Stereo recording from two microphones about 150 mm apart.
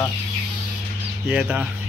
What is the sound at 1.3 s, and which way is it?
Speech, 5° right (ahead or behind).